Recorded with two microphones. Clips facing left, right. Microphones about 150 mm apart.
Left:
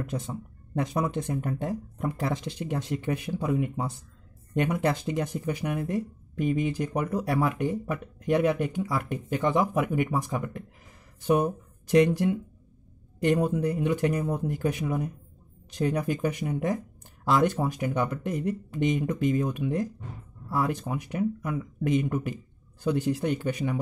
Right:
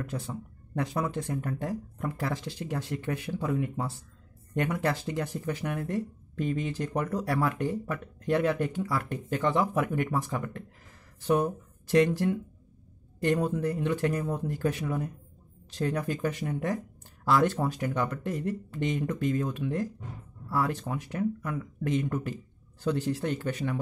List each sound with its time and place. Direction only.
0.0 s speech: 15° left (ahead or behind)